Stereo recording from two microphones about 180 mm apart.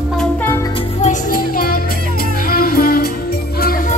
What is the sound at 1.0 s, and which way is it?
Music, 45° left (ahead or behind).